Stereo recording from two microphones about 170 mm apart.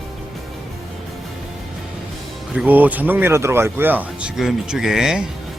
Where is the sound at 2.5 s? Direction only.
10° right (ahead or behind).